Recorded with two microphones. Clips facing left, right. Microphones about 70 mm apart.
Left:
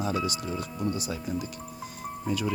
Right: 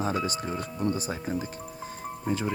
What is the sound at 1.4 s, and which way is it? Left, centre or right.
Music, right.